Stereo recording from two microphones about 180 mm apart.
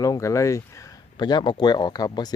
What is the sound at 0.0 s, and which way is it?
Speech, 15° left (ahead or behind).